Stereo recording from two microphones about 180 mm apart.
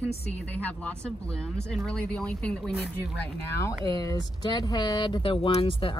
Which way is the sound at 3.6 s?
20° left (ahead or behind).